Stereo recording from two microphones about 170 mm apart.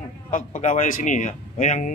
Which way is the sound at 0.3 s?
50° left (ahead or behind).